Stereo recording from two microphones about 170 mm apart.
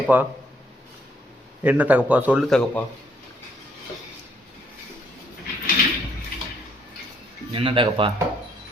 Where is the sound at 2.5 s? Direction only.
5° left (ahead or behind).